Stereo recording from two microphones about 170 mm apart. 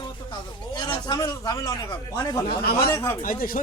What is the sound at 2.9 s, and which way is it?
Speech, 15° left (ahead or behind).